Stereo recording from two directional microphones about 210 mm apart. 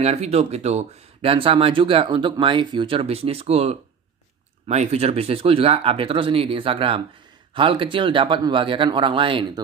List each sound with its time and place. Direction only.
0.0 s speech: 30° right (ahead or behind)